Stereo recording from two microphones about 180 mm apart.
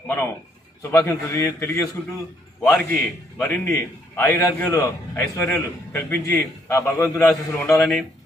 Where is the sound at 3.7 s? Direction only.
10° left (ahead or behind).